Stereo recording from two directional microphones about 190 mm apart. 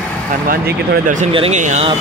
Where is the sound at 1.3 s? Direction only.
35° right (ahead or behind).